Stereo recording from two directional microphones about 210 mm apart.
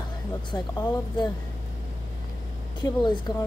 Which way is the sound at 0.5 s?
20° left (ahead or behind).